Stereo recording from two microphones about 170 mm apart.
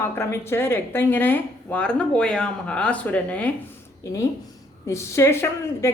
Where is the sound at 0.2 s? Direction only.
15° left (ahead or behind).